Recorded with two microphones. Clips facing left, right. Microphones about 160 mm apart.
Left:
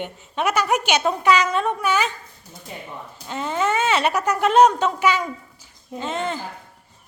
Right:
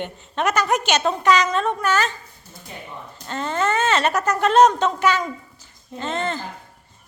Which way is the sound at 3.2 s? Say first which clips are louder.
Even; 10° left (ahead or behind).